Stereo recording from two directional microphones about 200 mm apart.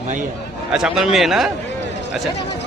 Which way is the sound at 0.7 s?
5° right (ahead or behind).